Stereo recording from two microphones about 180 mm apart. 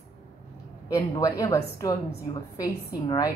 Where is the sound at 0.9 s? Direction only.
20° left (ahead or behind).